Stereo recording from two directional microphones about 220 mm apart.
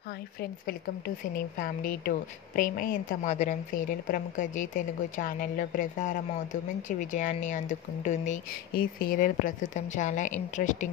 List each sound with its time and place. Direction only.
0.4 s a woman's voice: 45° left (ahead or behind)